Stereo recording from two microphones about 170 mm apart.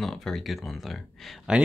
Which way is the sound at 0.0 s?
Centre (ahead or behind).